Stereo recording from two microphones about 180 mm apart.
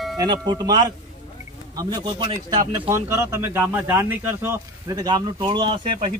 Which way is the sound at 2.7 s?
15° right (ahead or behind).